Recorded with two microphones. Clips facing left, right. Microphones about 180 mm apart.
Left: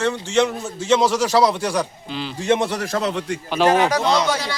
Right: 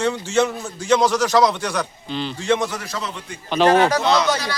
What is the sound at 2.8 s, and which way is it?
Speech, 60° left (ahead or behind).